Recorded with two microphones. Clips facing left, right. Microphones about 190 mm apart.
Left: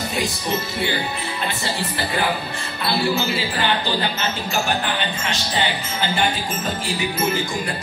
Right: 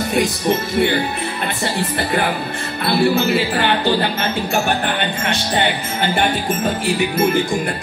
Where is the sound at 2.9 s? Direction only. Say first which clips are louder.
Right 6 dB; 55° right (ahead or behind).